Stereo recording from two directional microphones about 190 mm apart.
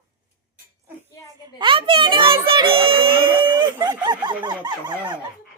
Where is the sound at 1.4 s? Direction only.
25° right (ahead or behind).